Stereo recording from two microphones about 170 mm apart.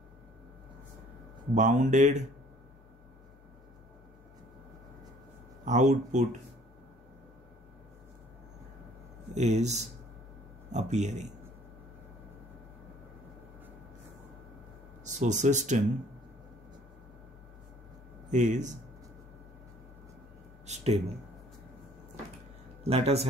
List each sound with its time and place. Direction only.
1.5 s a man's voice: 45° right (ahead or behind)
5.7 s a man's voice: 45° right (ahead or behind)
9.3 s a man's voice: 45° right (ahead or behind)
15.0 s speech: 45° right (ahead or behind)
18.3 s a man's voice: 45° right (ahead or behind)
20.6 s a sound: 40° right (ahead or behind)
22.8 s speech: 35° right (ahead or behind)